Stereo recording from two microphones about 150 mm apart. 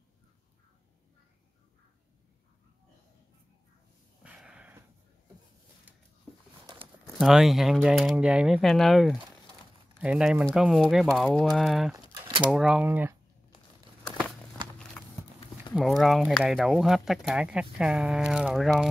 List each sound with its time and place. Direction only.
4.2 s a sound: 5° right (ahead or behind)
7.2 s speech: centre (ahead or behind)
11.9 s a sound: 20° right (ahead or behind)
12.4 s speech: 5° right (ahead or behind)
14.6 s clip-clop: 30° right (ahead or behind)
15.7 s speech: centre (ahead or behind)